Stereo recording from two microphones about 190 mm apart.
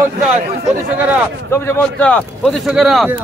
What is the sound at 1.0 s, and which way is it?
Speech, 10° right (ahead or behind).